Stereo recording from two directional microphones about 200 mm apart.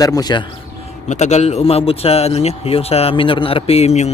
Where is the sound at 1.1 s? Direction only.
35° left (ahead or behind).